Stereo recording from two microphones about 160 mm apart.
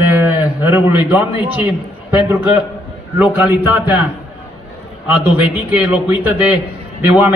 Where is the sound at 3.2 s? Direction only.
10° right (ahead or behind).